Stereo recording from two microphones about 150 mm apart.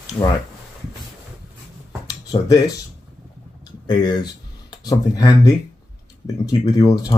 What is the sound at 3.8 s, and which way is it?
Speech, 25° left (ahead or behind).